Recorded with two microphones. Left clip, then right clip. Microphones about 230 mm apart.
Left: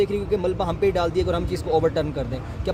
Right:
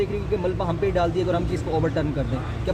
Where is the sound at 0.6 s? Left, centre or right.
Left.